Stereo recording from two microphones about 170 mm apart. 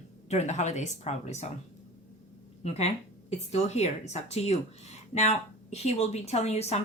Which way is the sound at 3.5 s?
40° left (ahead or behind).